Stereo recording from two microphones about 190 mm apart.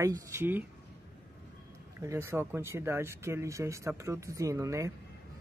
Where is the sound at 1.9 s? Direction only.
15° right (ahead or behind).